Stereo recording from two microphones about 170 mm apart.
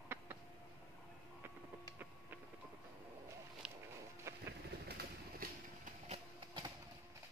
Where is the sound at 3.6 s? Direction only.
5° right (ahead or behind).